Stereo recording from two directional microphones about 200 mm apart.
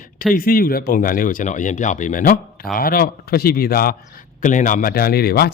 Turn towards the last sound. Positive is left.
turn(degrees=50)  # may be behind; listen again after turning